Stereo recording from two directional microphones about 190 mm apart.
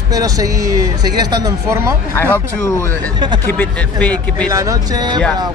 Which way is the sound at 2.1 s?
10° left (ahead or behind).